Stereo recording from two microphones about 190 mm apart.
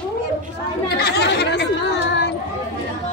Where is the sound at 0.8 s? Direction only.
60° left (ahead or behind).